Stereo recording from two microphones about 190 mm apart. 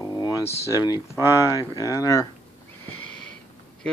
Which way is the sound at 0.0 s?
20° left (ahead or behind).